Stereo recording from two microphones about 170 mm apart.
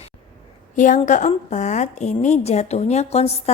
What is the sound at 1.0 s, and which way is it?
A woman's voice, 45° left (ahead or behind).